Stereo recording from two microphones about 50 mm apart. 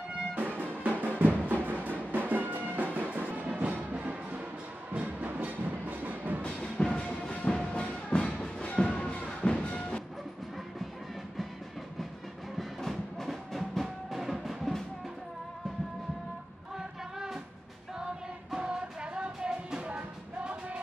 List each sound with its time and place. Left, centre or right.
0.3 s music: right
6.8 s music: centre
12.5 s music: centre
16.7 s music: centre
18.5 s music: centre